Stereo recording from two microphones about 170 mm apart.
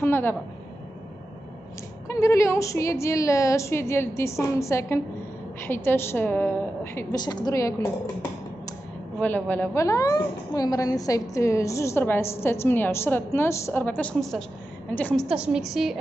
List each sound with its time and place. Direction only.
0.0 s a woman's voice: 10° left (ahead or behind)
2.0 s a woman's voice: 15° left (ahead or behind)
9.2 s a woman's voice: 10° left (ahead or behind)
15.2 s a woman's voice: 5° right (ahead or behind)